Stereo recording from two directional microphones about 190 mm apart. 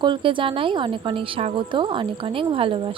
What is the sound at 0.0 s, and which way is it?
A woman's voice, 25° right (ahead or behind).